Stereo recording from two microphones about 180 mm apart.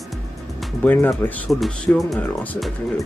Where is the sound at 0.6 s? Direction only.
10° left (ahead or behind).